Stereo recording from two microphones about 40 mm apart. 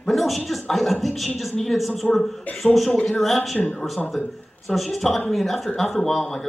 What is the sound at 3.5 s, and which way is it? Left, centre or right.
Speech, left.